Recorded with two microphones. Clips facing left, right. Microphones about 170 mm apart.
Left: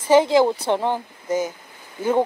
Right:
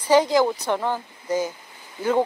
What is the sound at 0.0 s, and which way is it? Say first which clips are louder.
A woman's voice: left 2 dB; 25° left (ahead or behind).